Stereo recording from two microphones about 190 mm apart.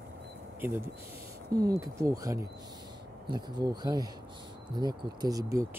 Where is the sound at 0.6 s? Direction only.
10° right (ahead or behind).